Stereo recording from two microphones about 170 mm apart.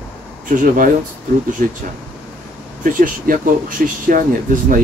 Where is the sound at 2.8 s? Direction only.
55° right (ahead or behind).